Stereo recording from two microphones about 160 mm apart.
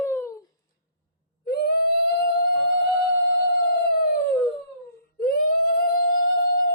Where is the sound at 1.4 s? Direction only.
75° left (ahead or behind).